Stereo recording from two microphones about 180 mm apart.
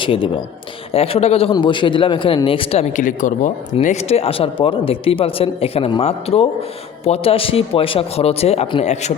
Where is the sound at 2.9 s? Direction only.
45° left (ahead or behind).